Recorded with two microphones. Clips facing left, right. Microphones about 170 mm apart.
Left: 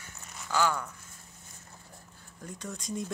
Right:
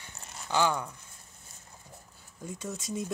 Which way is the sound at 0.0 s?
20° right (ahead or behind).